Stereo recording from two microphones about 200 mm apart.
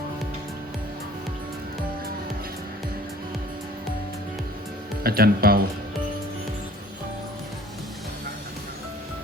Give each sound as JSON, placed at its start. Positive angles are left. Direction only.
{"t": 5.0, "sound": "speech", "side_deg": -50}